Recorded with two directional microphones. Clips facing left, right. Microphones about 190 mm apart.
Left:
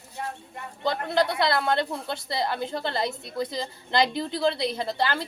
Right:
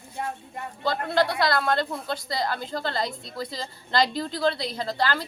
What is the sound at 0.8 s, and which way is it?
A woman's voice, 20° left (ahead or behind).